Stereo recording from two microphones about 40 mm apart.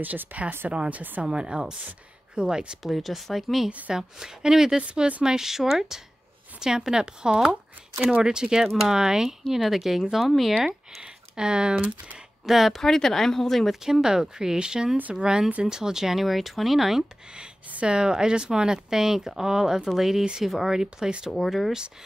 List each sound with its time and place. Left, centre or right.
0.0 s speech: right
0.7 s speech: right
1.2 s speech: right
2.8 s speech: centre
3.9 s speech: centre
4.8 s speech: right; by 10.5 s centre
11.0 s speech: right
11.7 s speech: right
12.4 s speech: centre
12.8 s speech: centre
13.7 s speech: centre
14.0 s speech: centre
17.8 s speech: right
21.3 s speech: centre